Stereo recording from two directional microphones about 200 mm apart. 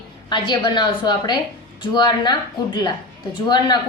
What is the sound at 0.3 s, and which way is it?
A woman's voice, 20° left (ahead or behind).